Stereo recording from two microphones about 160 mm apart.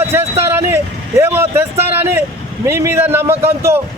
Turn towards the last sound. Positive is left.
turn(degrees=-15)  # may be behind; listen again after turning